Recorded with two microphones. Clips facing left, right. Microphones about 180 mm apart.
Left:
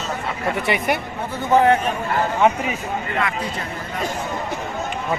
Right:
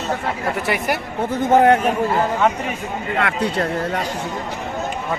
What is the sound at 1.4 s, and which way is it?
Speech, 45° right (ahead or behind).